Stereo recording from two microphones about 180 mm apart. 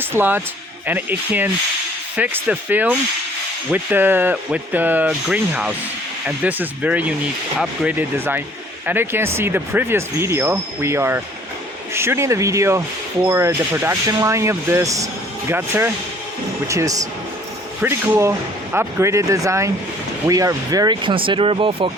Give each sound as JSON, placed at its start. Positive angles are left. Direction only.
{"t": 0.0, "sound": "speech", "side_deg": -10}